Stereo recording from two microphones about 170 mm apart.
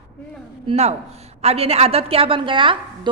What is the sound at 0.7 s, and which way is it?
A woman's voice, 40° right (ahead or behind).